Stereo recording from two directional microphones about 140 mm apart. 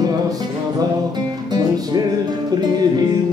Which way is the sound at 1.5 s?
30° right (ahead or behind).